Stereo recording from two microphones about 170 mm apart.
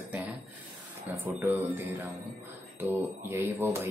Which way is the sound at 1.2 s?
10° right (ahead or behind).